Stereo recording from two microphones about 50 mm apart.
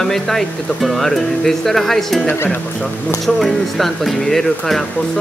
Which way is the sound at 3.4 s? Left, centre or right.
Centre.